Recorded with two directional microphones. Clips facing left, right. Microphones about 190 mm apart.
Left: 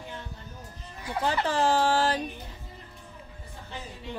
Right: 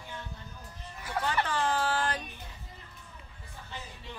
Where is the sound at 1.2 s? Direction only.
35° left (ahead or behind).